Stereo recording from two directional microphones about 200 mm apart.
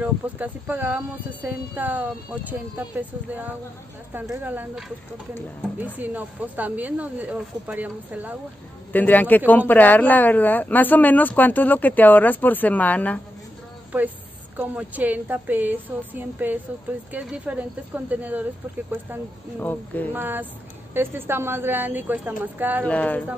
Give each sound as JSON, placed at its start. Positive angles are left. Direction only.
{"t": 0.0, "sound": "speech", "side_deg": -10}
{"t": 5.9, "sound": "speech", "side_deg": -10}
{"t": 8.9, "sound": "speech", "side_deg": 10}
{"t": 14.6, "sound": "speech", "side_deg": -10}
{"t": 19.6, "sound": "speech", "side_deg": 10}
{"t": 20.2, "sound": "speech", "side_deg": -10}
{"t": 22.8, "sound": "speech", "side_deg": 5}